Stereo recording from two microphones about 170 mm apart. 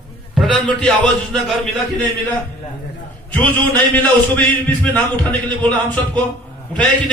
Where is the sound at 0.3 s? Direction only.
Centre (ahead or behind).